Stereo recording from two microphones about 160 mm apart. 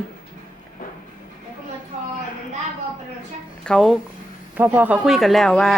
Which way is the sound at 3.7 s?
Centre (ahead or behind).